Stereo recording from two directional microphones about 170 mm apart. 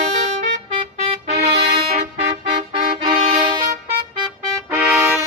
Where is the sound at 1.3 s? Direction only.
75° right (ahead or behind).